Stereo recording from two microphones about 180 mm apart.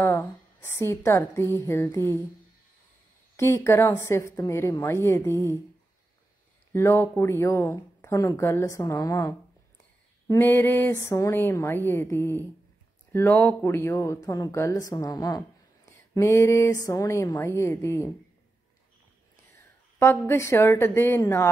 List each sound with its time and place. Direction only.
0.0 s speech: 10° left (ahead or behind)
3.3 s speech: 15° left (ahead or behind)
5.3 s speech: 15° right (ahead or behind)
6.7 s speech: 15° left (ahead or behind)
20.0 s speech: 15° left (ahead or behind)